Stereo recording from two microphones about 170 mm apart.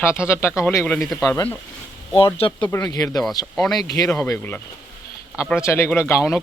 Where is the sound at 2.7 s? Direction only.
20° left (ahead or behind).